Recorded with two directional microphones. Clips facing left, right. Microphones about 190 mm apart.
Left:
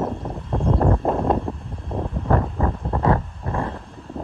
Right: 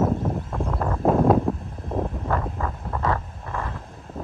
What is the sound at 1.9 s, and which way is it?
Vehicle, centre (ahead or behind).